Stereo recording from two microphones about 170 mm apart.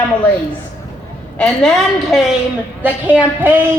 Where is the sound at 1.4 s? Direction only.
5° left (ahead or behind).